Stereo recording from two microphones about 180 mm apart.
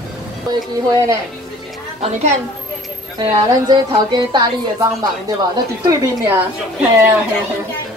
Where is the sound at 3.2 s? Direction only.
25° right (ahead or behind).